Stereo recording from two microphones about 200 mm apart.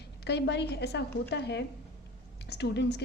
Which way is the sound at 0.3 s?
55° left (ahead or behind).